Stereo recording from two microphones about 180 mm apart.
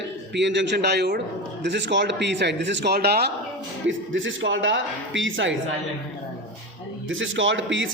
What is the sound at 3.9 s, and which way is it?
A man's voice, 90° right.